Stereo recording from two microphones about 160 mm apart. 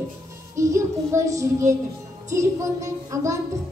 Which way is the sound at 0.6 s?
20° right (ahead or behind).